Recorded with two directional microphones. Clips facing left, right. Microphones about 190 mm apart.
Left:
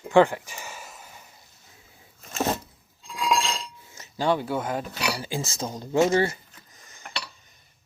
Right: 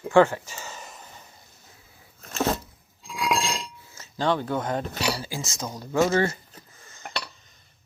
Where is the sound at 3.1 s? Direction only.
10° right (ahead or behind).